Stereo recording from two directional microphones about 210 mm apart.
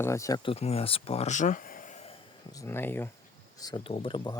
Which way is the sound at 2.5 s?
15° left (ahead or behind).